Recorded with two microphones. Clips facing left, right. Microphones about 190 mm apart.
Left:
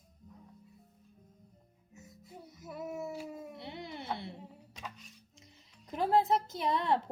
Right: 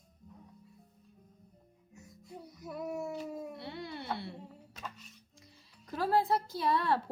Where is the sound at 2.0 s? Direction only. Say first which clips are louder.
Right 2 dB; centre (ahead or behind).